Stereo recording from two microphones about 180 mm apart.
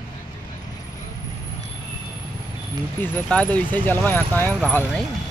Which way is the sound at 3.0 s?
5° left (ahead or behind).